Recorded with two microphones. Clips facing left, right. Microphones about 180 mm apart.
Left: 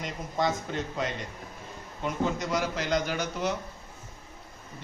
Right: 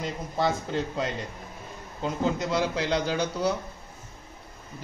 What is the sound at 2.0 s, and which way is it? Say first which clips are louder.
Speech: right 2 dB; 30° right (ahead or behind).